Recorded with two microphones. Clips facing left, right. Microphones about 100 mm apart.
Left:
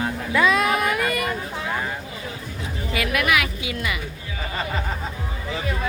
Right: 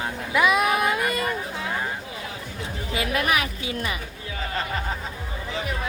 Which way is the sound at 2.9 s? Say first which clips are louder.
Left 2 dB; 30° right (ahead or behind).